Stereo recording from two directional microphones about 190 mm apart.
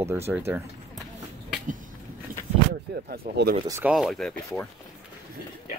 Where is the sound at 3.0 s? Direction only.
55° right (ahead or behind).